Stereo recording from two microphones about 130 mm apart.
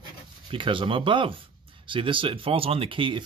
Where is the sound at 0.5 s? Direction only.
40° right (ahead or behind).